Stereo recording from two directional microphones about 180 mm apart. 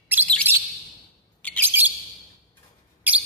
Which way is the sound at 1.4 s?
10° left (ahead or behind).